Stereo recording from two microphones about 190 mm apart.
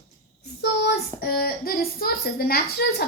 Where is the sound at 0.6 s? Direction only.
60° left (ahead or behind).